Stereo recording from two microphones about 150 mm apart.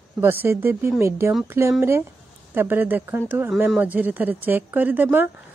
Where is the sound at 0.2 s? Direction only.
15° right (ahead or behind).